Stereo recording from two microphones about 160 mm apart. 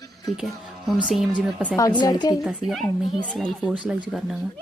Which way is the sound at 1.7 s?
25° left (ahead or behind).